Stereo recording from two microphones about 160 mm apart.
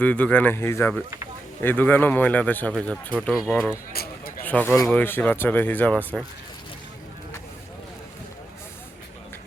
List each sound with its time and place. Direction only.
0.0 s speech: 10° left (ahead or behind)
3.9 s a sound: 70° left (ahead or behind)
4.4 s speech: 10° left (ahead or behind)